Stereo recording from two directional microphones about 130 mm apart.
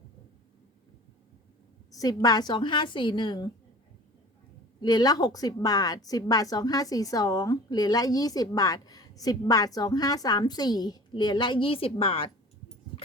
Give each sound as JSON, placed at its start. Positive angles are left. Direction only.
{"t": 1.9, "sound": "a woman's voice", "side_deg": 30}
{"t": 4.8, "sound": "a woman's voice", "side_deg": 30}